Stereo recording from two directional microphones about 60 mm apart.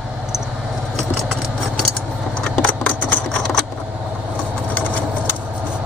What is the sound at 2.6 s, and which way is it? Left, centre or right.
Engine, left.